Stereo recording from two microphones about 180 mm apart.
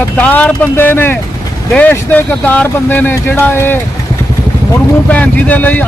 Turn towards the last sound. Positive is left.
turn(degrees=10)  # may be behind; listen again after turning